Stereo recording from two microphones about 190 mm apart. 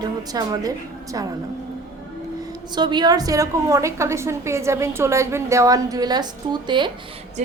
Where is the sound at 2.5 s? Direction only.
20° right (ahead or behind).